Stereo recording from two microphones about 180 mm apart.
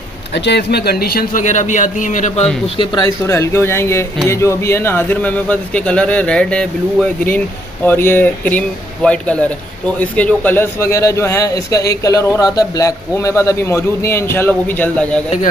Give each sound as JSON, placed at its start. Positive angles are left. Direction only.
{"t": 0.3, "sound": "a man's voice", "side_deg": 70}
{"t": 2.8, "sound": "a man's voice", "side_deg": 25}